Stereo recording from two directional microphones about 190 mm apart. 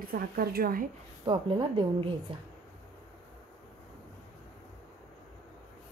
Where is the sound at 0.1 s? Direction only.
55° right (ahead or behind).